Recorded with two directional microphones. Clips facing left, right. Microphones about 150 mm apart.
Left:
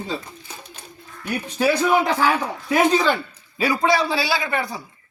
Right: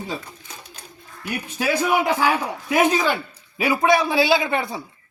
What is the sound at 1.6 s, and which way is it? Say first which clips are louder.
A man's voice: left 2 dB; 10° right (ahead or behind).